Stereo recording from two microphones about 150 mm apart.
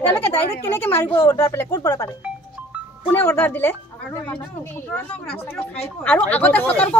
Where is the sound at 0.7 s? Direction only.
15° left (ahead or behind).